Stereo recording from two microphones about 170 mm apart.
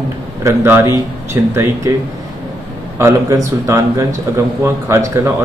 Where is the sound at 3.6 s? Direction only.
15° right (ahead or behind).